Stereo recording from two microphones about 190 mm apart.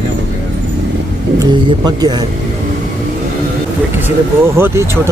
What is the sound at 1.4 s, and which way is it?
Speech, 25° right (ahead or behind).